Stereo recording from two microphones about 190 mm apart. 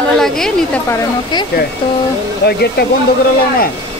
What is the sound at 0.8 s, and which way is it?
Speech, 20° left (ahead or behind).